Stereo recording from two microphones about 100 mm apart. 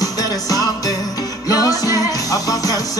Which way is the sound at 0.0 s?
35° left (ahead or behind).